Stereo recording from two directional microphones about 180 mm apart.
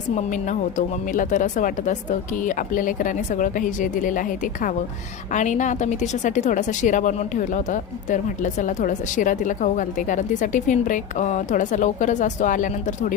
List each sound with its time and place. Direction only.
0.8 s speech: 45° left (ahead or behind)
5.3 s speech: 45° left (ahead or behind)